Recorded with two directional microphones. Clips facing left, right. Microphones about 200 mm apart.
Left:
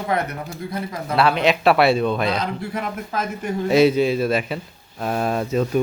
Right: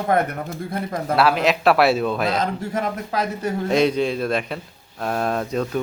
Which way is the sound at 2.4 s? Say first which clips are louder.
Right 2 dB; 45° right (ahead or behind).